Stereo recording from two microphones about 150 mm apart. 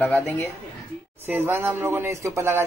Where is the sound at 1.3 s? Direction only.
15° right (ahead or behind).